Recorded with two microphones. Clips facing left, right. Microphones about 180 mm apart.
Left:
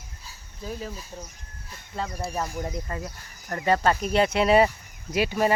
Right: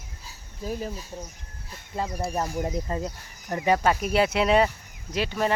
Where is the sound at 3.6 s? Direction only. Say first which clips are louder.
Even; 10° right (ahead or behind).